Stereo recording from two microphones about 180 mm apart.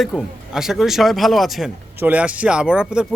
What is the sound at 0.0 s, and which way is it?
Speech, 5° right (ahead or behind).